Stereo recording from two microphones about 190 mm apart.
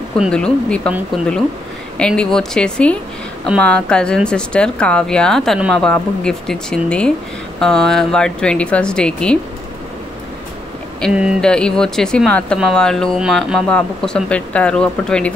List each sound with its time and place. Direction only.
0.2 s speech: 5° left (ahead or behind)
11.0 s speech: 5° right (ahead or behind)